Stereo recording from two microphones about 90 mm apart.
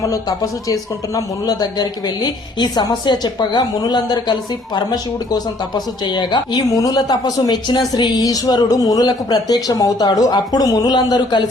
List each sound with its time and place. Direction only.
0.0 s speech: 40° left (ahead or behind)